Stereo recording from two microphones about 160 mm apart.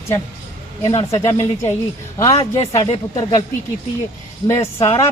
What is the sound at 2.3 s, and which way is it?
Speech, 40° left (ahead or behind).